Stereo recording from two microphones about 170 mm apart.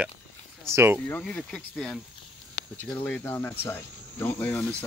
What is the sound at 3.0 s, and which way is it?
Speech, 10° left (ahead or behind).